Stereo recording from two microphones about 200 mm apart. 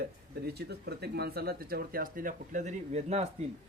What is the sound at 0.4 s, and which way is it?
Speech, 55° right (ahead or behind).